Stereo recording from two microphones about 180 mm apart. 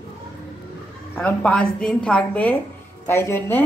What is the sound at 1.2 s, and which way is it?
A woman's voice, 5° left (ahead or behind).